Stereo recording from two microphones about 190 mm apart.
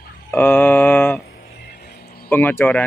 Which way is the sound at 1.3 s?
55° left (ahead or behind).